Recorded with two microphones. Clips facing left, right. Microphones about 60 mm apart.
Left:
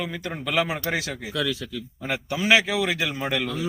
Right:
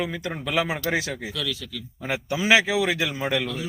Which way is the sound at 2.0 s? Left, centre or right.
Centre.